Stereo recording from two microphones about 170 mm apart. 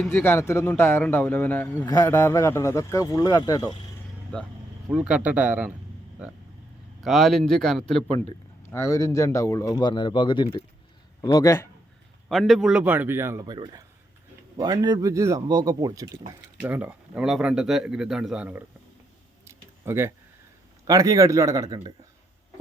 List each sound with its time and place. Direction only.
0.0 s speech: 10° left (ahead or behind)
4.9 s a man's voice: 5° right (ahead or behind)
7.0 s speech: centre (ahead or behind)
8.7 s speech: 15° left (ahead or behind)
12.3 s a man's voice: centre (ahead or behind); by 16.0 s 20° right (ahead or behind)
16.6 s speech: 10° right (ahead or behind)
19.5 s a sound: 15° right (ahead or behind)
20.8 s speech: 20° right (ahead or behind)